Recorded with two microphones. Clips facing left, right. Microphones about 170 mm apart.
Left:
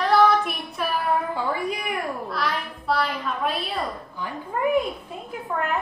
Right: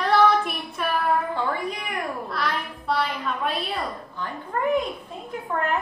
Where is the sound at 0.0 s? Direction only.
Centre (ahead or behind).